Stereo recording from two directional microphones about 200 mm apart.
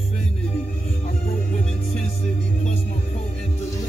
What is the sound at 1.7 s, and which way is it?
Music, 35° left (ahead or behind).